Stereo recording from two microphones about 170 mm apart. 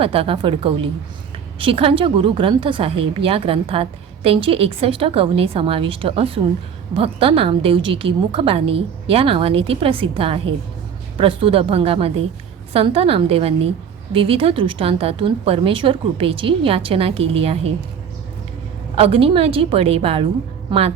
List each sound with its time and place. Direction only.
0.0 s a woman's voice: 35° right (ahead or behind)
18.9 s a woman's voice: 35° right (ahead or behind)